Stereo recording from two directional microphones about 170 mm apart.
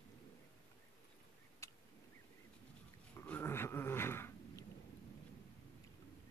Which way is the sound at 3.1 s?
10° left (ahead or behind).